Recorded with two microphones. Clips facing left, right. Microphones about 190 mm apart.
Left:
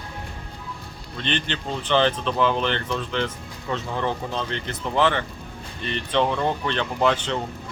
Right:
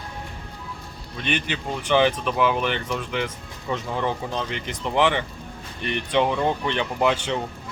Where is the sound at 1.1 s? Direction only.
10° right (ahead or behind).